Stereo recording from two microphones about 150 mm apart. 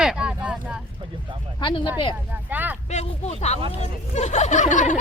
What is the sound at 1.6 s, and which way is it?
Speech, 30° left (ahead or behind).